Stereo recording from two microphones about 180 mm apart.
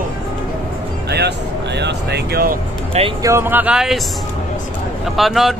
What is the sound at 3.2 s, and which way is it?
Speech, 15° right (ahead or behind).